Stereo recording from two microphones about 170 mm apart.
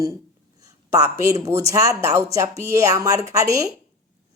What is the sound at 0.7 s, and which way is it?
Speech, 15° right (ahead or behind).